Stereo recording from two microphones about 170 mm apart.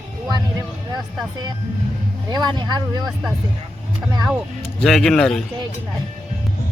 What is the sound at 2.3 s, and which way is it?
Speech, 25° right (ahead or behind).